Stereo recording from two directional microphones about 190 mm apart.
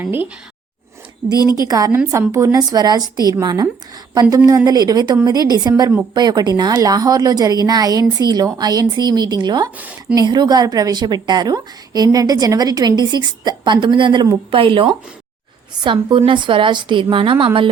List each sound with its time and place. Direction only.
0.0 s speech: 10° right (ahead or behind)
1.4 s a woman's voice: 20° left (ahead or behind)
1.6 s a woman's voice: 20° right (ahead or behind)
9.7 s speech: 10° right (ahead or behind)
10.2 s a woman's voice: 20° right (ahead or behind)